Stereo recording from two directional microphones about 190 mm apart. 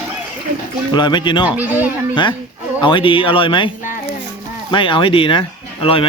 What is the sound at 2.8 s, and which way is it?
Speech, 25° left (ahead or behind).